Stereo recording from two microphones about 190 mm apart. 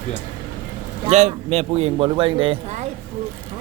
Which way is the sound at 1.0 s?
35° right (ahead or behind).